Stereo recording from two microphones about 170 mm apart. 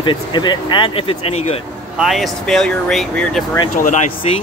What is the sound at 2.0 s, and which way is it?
Speech, centre (ahead or behind).